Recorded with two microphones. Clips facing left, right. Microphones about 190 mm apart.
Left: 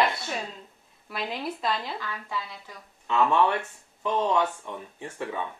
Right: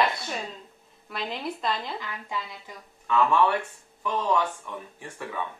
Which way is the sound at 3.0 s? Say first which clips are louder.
Even; 20° left (ahead or behind).